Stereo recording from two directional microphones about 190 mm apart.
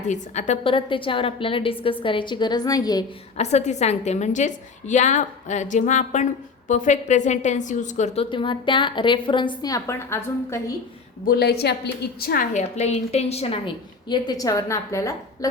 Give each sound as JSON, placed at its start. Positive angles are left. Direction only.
{"t": 0.1, "sound": "a woman's voice", "side_deg": 35}
{"t": 3.3, "sound": "a woman's voice", "side_deg": 35}
{"t": 11.3, "sound": "a woman's voice", "side_deg": 55}